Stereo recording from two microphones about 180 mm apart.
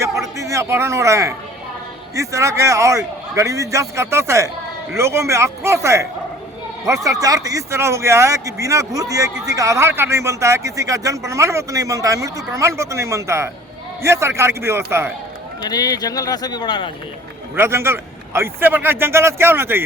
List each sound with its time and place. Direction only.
0.0 s a sound: 15° right (ahead or behind)
2.1 s speech: 15° right (ahead or behind)
15.6 s speech: 20° left (ahead or behind)
17.5 s speech: 15° right (ahead or behind)